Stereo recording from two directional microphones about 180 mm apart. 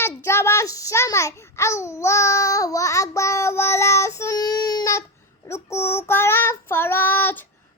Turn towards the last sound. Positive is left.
turn(degrees=10)  # may be behind; listen again after turning